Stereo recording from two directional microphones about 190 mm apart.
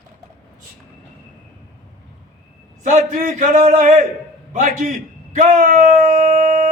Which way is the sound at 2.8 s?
40° right (ahead or behind).